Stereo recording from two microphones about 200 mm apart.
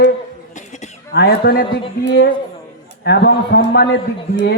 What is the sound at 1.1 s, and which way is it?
A man's voice, 50° left (ahead or behind).